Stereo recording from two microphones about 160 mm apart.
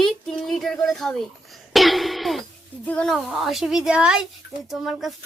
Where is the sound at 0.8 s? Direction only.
Centre (ahead or behind).